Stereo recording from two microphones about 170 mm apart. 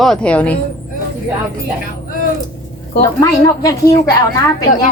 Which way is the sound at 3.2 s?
20° left (ahead or behind).